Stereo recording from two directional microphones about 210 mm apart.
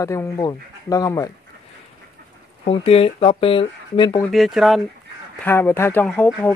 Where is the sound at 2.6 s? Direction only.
25° left (ahead or behind).